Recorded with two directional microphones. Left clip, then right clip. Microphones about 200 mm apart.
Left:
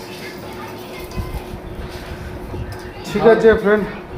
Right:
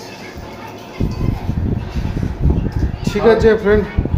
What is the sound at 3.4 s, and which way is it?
Speech, 5° right (ahead or behind).